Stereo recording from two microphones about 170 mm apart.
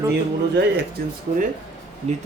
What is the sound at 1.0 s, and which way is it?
Speech, 70° right (ahead or behind).